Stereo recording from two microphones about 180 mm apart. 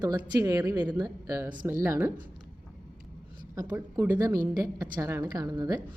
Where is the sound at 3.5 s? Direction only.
15° right (ahead or behind).